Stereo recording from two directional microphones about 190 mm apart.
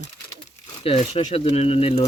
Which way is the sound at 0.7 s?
30° left (ahead or behind).